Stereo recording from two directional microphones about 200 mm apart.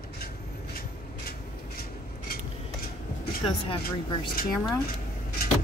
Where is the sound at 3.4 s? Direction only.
25° left (ahead or behind).